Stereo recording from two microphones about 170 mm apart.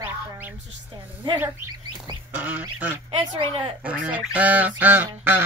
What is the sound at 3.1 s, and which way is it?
Speech, 30° right (ahead or behind).